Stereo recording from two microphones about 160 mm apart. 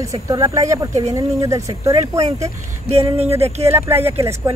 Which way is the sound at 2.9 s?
40° right (ahead or behind).